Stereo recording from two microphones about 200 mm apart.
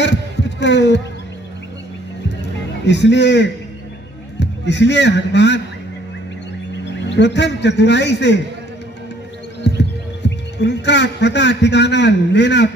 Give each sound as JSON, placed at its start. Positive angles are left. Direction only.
{"t": 0.0, "sound": "heart sounds", "side_deg": 60}
{"t": 2.8, "sound": "a man's voice", "side_deg": 60}
{"t": 7.1, "sound": "a man's voice", "side_deg": 60}
{"t": 9.6, "sound": "speech", "side_deg": 60}